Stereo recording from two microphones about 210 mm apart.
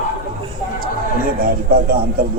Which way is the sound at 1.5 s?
45° right (ahead or behind).